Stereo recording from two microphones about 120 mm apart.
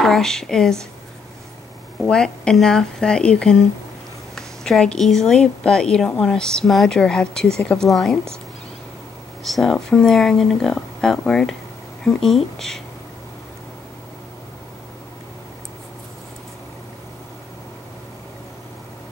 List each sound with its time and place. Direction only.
0.0 s speech: 5° left (ahead or behind)
2.0 s speech: 5° left (ahead or behind)
9.4 s speech: centre (ahead or behind)